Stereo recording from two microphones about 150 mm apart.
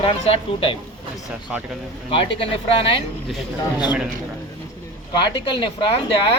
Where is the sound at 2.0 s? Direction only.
35° left (ahead or behind).